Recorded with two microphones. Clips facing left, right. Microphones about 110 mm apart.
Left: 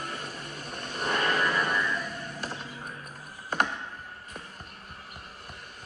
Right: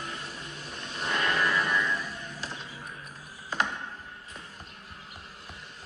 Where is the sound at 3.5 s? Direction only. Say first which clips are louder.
Left 2 dB; 55° left (ahead or behind).